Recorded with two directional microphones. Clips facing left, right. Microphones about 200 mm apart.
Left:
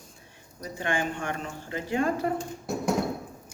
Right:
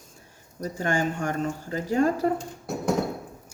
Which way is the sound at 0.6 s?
45° right (ahead or behind).